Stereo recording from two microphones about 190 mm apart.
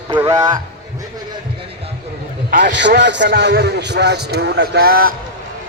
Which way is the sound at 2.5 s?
50° right (ahead or behind).